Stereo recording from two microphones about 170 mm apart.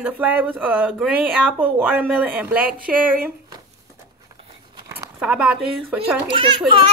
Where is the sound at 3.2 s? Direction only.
20° right (ahead or behind).